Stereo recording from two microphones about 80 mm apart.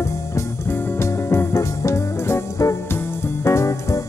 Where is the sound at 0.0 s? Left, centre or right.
Left.